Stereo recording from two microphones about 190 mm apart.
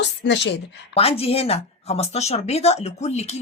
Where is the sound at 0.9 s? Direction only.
30° left (ahead or behind).